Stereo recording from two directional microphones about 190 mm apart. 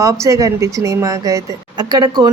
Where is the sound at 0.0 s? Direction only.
15° right (ahead or behind).